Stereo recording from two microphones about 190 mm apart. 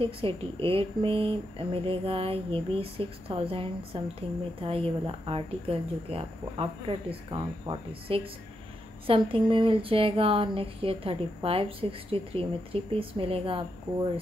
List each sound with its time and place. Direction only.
0.0 s speech: 30° right (ahead or behind)